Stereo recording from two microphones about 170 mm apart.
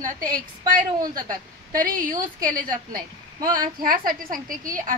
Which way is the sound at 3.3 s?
25° right (ahead or behind).